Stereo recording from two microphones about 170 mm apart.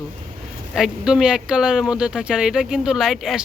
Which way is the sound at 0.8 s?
5° right (ahead or behind).